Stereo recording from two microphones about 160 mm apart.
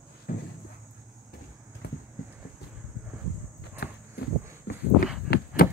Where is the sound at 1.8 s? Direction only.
80° left.